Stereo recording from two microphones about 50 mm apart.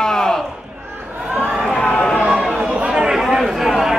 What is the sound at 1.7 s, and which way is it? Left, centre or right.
Run, left.